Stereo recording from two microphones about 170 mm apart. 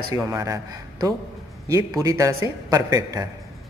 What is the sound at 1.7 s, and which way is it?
A woman's voice, 20° right (ahead or behind).